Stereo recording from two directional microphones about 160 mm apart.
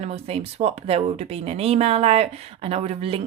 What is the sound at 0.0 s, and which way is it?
Speech, 40° right (ahead or behind).